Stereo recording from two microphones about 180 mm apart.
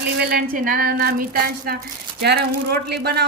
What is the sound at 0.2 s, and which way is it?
A woman's voice, 60° right (ahead or behind).